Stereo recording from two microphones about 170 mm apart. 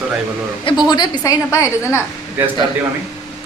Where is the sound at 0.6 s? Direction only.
25° left (ahead or behind).